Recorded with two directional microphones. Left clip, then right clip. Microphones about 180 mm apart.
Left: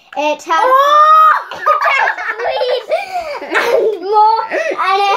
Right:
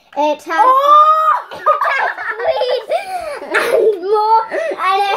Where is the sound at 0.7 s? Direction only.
15° left (ahead or behind).